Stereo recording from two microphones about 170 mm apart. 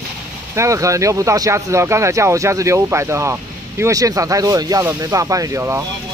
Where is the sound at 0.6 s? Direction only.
20° right (ahead or behind).